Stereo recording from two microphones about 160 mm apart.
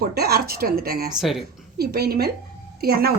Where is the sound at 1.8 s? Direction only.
80° right.